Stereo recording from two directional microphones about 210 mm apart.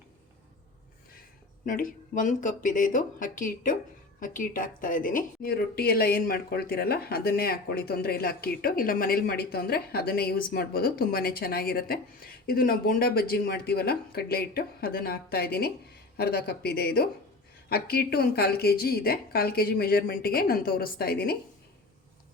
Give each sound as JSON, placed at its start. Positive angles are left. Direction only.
{"t": 1.6, "sound": "speech", "side_deg": 40}